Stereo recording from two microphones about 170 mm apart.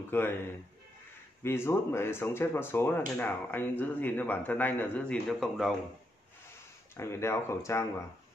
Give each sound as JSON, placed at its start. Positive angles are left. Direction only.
{"t": 0.1, "sound": "a man's voice", "side_deg": 15}
{"t": 1.4, "sound": "a man's voice", "side_deg": 15}
{"t": 7.0, "sound": "a man's voice", "side_deg": 15}